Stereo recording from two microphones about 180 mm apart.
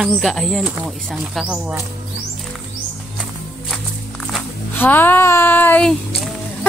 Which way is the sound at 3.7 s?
Centre (ahead or behind).